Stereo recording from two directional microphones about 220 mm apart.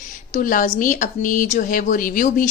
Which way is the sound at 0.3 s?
40° left (ahead or behind).